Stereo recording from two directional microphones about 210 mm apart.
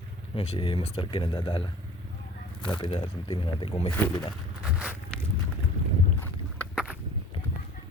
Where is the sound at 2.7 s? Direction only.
25° left (ahead or behind).